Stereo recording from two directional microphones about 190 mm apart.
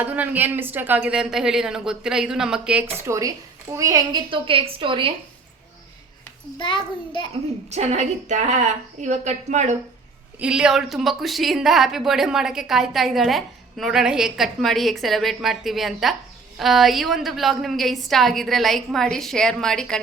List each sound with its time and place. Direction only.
0.0 s speech: 10° right (ahead or behind); by 5.1 s 25° right (ahead or behind)
6.6 s a child's voice: 25° left (ahead or behind)
7.7 s a woman's voice: 35° right (ahead or behind)
10.4 s speech: 5° right (ahead or behind)